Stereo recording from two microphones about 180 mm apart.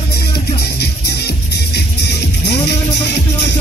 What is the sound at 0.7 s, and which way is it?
Music, 65° left (ahead or behind).